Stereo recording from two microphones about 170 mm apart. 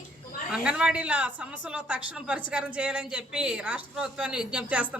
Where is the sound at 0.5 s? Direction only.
5° right (ahead or behind).